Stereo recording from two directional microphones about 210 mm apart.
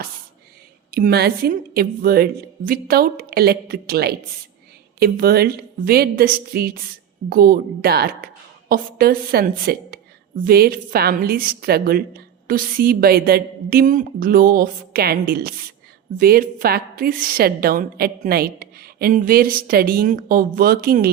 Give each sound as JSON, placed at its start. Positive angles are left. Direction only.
{"t": 0.9, "sound": "a woman's voice", "side_deg": -45}